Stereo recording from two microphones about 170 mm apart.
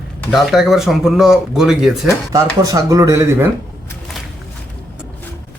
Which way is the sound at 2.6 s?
20° right (ahead or behind).